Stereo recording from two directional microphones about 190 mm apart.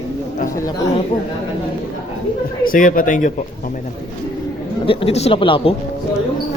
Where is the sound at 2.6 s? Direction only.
45° left (ahead or behind).